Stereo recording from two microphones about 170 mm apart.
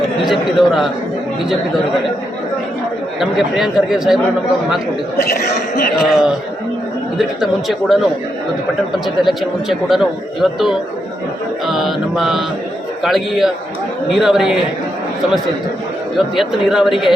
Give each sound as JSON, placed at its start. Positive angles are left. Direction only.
{"t": 0.3, "sound": "a man's voice", "side_deg": 0}
{"t": 3.2, "sound": "a man's voice", "side_deg": -5}
{"t": 5.1, "sound": "speech", "side_deg": 65}
{"t": 6.0, "sound": "a man's voice", "side_deg": 0}
{"t": 7.7, "sound": "a man's voice", "side_deg": 0}
{"t": 9.2, "sound": "a man's voice", "side_deg": 0}
{"t": 16.1, "sound": "a man's voice", "side_deg": 0}